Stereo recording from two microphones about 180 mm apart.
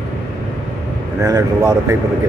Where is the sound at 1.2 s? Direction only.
20° right (ahead or behind).